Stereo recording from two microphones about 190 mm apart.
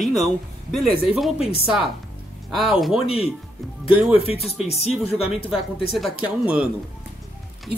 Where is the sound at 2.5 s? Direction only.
Centre (ahead or behind).